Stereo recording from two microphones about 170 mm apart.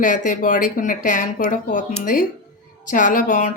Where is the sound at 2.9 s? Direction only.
50° left (ahead or behind).